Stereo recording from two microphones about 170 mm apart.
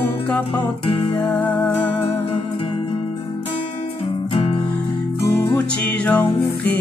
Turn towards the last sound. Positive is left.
turn(degrees=10)  # may be behind; listen again after turning